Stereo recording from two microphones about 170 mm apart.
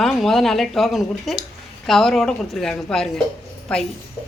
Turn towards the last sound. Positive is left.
turn(degrees=5)  # may be behind; listen again after turning